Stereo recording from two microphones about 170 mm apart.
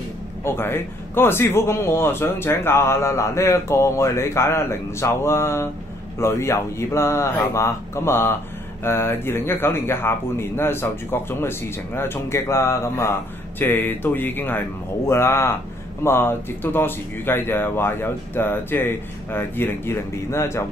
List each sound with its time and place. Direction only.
0.4 s a man's voice: 15° left (ahead or behind)